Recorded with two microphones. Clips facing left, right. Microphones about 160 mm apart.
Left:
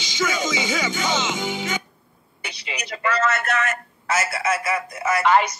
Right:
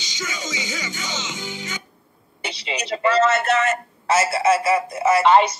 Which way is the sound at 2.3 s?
25° right (ahead or behind).